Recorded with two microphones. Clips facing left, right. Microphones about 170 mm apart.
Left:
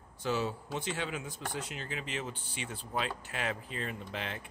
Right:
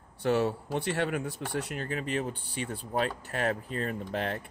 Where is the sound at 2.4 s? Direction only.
60° right (ahead or behind).